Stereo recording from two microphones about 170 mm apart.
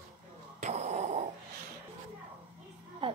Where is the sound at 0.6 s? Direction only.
45° right (ahead or behind).